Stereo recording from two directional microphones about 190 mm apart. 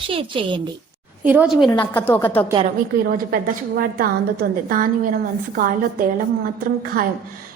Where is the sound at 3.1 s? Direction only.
50° right (ahead or behind).